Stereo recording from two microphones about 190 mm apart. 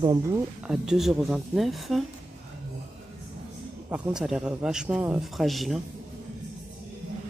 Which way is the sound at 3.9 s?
5° right (ahead or behind).